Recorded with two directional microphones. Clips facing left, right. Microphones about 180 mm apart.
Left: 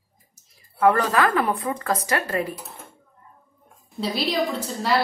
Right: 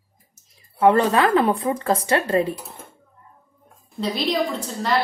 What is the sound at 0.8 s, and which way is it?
Speech, 25° right (ahead or behind).